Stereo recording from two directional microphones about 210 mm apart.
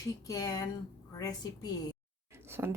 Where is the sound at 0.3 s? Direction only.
15° left (ahead or behind).